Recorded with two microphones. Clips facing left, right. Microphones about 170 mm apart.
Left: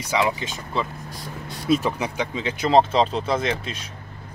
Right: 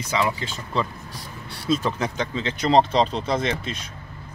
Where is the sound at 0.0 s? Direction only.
15° left (ahead or behind).